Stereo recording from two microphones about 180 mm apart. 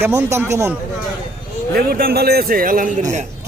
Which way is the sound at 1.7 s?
55° right (ahead or behind).